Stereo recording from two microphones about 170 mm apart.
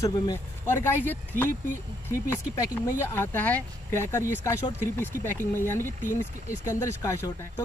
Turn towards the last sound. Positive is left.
turn(degrees=15)  # may be behind; listen again after turning